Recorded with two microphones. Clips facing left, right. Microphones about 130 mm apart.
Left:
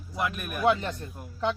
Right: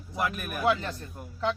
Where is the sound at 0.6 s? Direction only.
20° left (ahead or behind).